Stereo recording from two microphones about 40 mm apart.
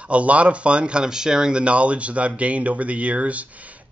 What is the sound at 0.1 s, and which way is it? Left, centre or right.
Speech, right.